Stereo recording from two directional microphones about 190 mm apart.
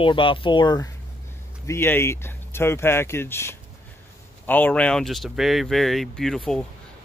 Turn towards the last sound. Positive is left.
turn(degrees=0)  # may be behind; listen again after turning